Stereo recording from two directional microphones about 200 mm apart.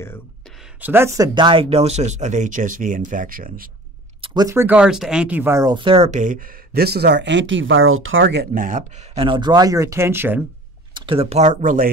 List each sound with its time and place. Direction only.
0.7 s speech: 10° right (ahead or behind); by 3.7 s 45° right (ahead or behind)
4.2 s speech: 20° right (ahead or behind); by 8.5 s 65° right (ahead or behind)
8.5 s speech: 40° right (ahead or behind); by 10.4 s 10° right (ahead or behind)
11.0 s speech: 25° right (ahead or behind)